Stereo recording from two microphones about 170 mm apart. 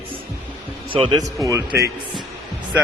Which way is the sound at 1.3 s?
20° right (ahead or behind).